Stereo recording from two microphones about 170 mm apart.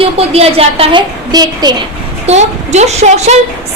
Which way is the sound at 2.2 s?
40° right (ahead or behind).